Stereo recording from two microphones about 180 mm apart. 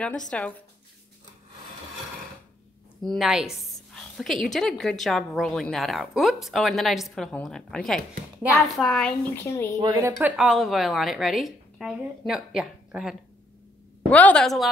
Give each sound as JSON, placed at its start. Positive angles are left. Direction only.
{"t": 0.0, "sound": "a woman's voice", "side_deg": 5}
{"t": 3.0, "sound": "a woman's voice", "side_deg": 0}
{"t": 9.8, "sound": "speech", "side_deg": -15}
{"t": 10.1, "sound": "a woman's voice", "side_deg": -5}
{"t": 14.1, "sound": "a woman's voice", "side_deg": 5}